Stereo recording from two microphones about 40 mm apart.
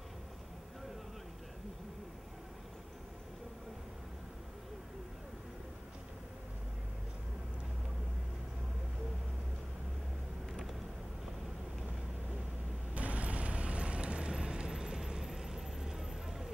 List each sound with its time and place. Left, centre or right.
12.9 s vehicle: right; by 16.4 s centre